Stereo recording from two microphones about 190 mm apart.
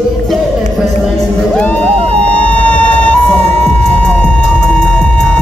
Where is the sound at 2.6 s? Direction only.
5° left (ahead or behind).